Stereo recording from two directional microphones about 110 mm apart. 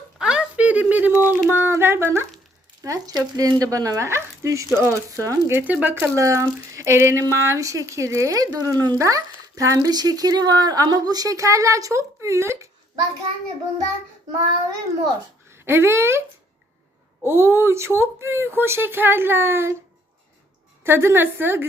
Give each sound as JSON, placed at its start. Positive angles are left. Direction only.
{"t": 0.2, "sound": "a sound", "side_deg": -10}
{"t": 2.8, "sound": "speech", "side_deg": -30}
{"t": 6.1, "sound": "speech", "side_deg": -30}
{"t": 15.6, "sound": "speech", "side_deg": -20}
{"t": 17.2, "sound": "speech", "side_deg": -20}
{"t": 20.8, "sound": "speech", "side_deg": -20}